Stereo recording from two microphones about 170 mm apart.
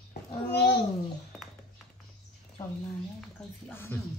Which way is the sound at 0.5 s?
80° left.